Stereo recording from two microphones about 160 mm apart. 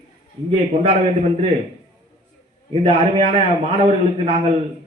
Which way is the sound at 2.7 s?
35° right (ahead or behind).